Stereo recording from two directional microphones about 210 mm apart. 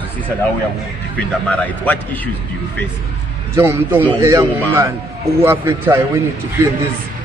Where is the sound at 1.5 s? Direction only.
5° left (ahead or behind).